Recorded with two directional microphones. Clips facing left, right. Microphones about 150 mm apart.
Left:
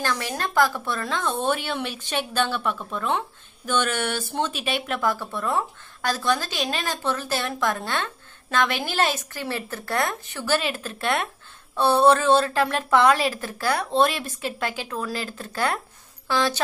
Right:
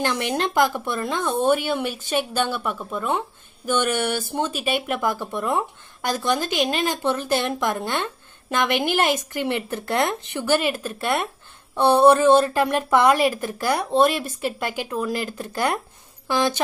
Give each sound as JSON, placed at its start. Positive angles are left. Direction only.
{"t": 0.0, "sound": "speech", "side_deg": -20}